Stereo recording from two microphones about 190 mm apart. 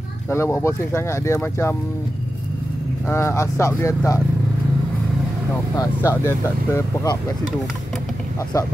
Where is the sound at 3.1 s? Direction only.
15° left (ahead or behind).